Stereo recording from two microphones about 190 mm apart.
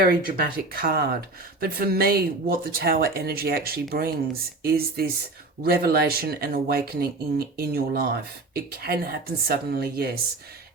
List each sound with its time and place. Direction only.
0.0 s speech: 50° right (ahead or behind)